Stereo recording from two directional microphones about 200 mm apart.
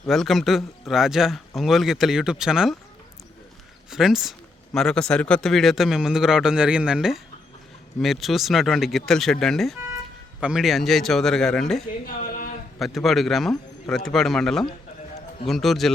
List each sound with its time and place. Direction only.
0.1 s speech: centre (ahead or behind)
3.8 s speech: centre (ahead or behind)
11.9 s a sound: 45° left (ahead or behind)
12.8 s speech: centre (ahead or behind)